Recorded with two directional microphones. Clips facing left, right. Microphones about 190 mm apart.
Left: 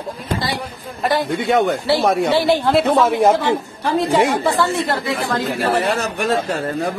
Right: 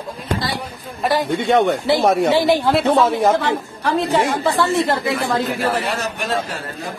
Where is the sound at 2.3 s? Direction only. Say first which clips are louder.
Even; 15° right (ahead or behind).